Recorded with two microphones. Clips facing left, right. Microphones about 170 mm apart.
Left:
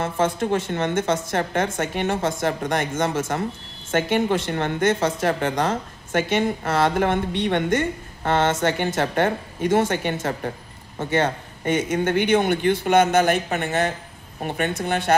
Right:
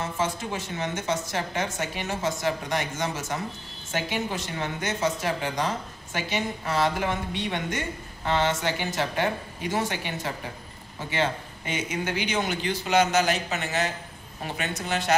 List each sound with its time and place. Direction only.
0.0 s a woman's voice: 55° left (ahead or behind)